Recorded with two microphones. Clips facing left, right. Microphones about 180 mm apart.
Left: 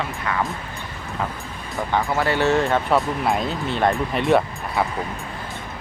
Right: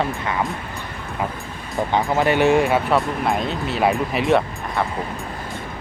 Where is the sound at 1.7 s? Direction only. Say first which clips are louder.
Right 3 dB; 20° right (ahead or behind).